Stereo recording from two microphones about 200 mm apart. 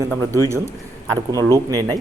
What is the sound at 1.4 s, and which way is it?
Speech, 20° right (ahead or behind).